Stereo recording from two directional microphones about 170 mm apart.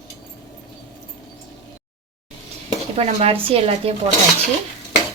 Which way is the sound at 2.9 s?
35° right (ahead or behind).